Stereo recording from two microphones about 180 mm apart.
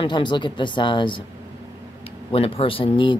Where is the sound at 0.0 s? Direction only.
25° left (ahead or behind).